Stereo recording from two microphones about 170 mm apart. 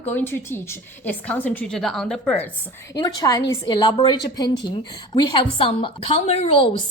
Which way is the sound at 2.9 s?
20° left (ahead or behind).